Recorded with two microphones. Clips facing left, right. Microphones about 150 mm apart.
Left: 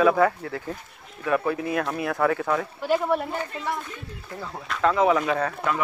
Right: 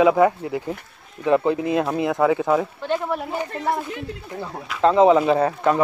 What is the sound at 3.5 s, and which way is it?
Speech, 50° right (ahead or behind).